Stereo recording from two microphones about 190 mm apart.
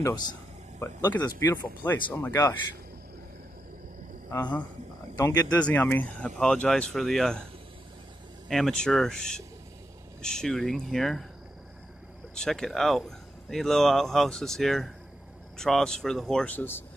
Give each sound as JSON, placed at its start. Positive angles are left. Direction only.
{"t": 0.0, "sound": "speech", "side_deg": 20}
{"t": 5.1, "sound": "speech", "side_deg": 20}
{"t": 8.5, "sound": "speech", "side_deg": 0}
{"t": 12.4, "sound": "speech", "side_deg": 5}